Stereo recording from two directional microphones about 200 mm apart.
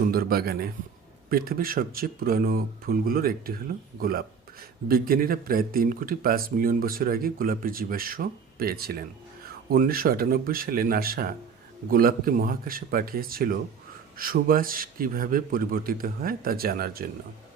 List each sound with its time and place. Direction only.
0.1 s speech: 50° right (ahead or behind)